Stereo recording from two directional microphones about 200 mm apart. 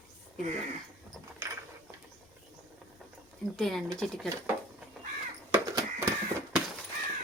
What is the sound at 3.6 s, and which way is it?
Speech, centre (ahead or behind).